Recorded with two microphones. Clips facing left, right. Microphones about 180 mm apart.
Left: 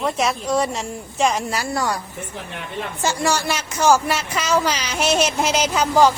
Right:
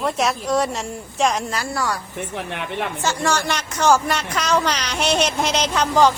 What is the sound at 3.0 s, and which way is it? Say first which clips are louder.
Speech: left 2 dB; 10° left (ahead or behind).